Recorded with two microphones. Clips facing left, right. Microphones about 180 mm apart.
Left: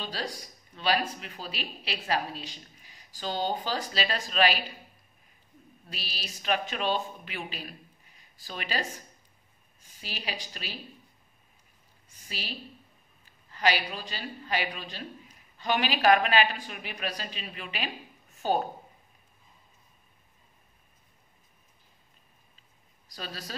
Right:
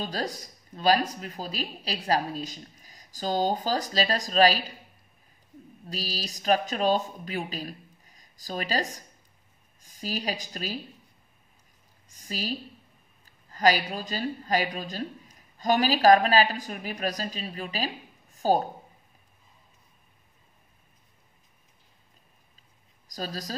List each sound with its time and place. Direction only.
0.0 s speech: 45° right (ahead or behind)
5.9 s a woman's voice: 40° right (ahead or behind)
12.1 s a woman's voice: 40° right (ahead or behind)
23.0 s speech: 40° right (ahead or behind)